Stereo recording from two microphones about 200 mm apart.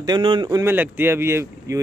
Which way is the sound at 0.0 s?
25° right (ahead or behind).